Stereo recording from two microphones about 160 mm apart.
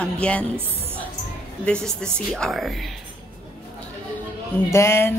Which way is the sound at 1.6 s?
5° left (ahead or behind).